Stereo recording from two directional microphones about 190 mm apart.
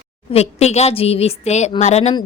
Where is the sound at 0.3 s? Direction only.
35° left (ahead or behind).